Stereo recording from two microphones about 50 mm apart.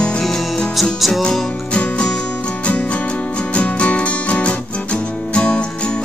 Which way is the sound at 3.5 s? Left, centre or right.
Left.